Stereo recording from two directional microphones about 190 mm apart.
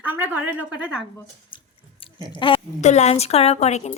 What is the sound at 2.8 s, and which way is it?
A woman's voice, 35° left (ahead or behind).